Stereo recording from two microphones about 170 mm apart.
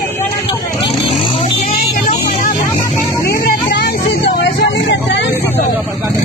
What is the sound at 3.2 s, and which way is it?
Music, 65° left (ahead or behind).